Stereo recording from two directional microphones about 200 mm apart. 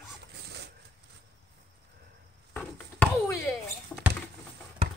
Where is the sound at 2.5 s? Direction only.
10° left (ahead or behind).